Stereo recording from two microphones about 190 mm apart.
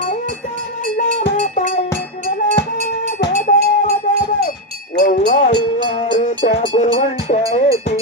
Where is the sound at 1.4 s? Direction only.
40° left (ahead or behind).